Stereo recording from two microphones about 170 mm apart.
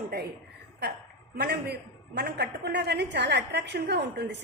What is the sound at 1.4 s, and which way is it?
A man's voice, 70° right (ahead or behind).